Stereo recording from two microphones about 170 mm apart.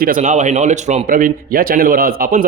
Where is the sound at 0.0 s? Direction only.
50° right (ahead or behind).